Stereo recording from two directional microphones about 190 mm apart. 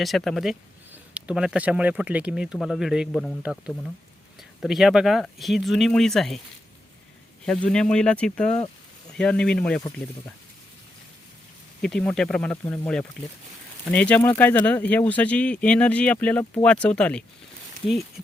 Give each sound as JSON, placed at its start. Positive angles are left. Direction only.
{"t": 0.0, "sound": "speech", "side_deg": 0}
{"t": 4.6, "sound": "speech", "side_deg": 0}
{"t": 7.4, "sound": "speech", "side_deg": 5}
{"t": 11.8, "sound": "speech", "side_deg": 5}